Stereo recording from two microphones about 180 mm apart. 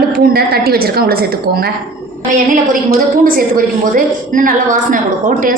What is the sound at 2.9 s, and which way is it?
A woman's voice, 50° right (ahead or behind).